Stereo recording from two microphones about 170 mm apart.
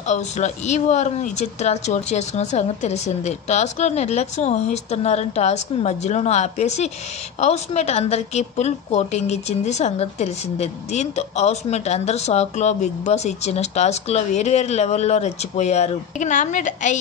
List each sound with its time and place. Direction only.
0.1 s a woman's voice: 45° left (ahead or behind)